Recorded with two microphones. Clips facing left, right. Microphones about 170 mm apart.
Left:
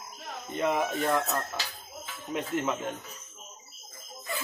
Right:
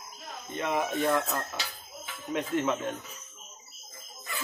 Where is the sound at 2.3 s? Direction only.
5° left (ahead or behind).